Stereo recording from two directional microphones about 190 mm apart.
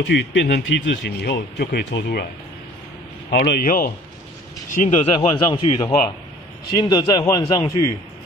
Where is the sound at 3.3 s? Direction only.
60° left (ahead or behind); by 7.7 s 20° left (ahead or behind).